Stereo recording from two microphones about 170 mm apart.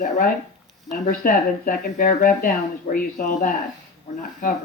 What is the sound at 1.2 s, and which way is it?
Speech, 55° left (ahead or behind).